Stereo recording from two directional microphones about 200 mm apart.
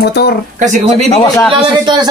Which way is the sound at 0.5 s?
35° right (ahead or behind).